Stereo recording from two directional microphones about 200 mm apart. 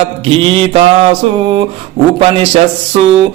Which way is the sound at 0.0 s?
25° right (ahead or behind).